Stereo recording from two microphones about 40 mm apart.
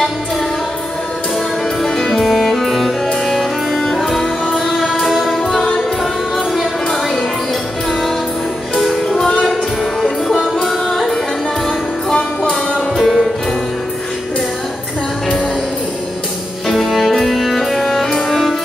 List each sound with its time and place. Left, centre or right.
1.8 s music: centre
6.9 s music: centre
8.7 s music: centre
10.6 s music: centre
12.4 s music: centre
13.0 s music: centre
16.6 s music: centre